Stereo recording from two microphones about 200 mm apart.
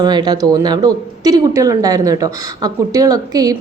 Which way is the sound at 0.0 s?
20° right (ahead or behind).